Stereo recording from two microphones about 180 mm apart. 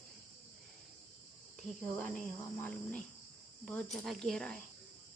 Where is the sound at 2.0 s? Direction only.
5° left (ahead or behind).